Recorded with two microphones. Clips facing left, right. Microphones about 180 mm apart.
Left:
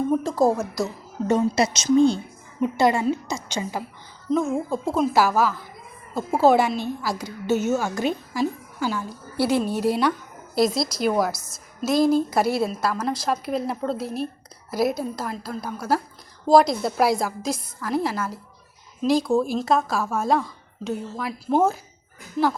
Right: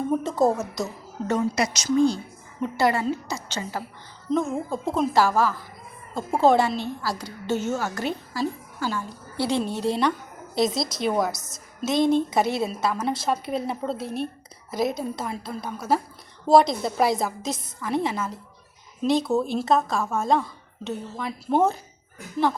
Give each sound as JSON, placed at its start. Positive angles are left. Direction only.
{"t": 0.1, "sound": "a sound", "side_deg": -5}
{"t": 1.3, "sound": "a woman's voice", "side_deg": 25}
{"t": 4.3, "sound": "a woman's voice", "side_deg": 0}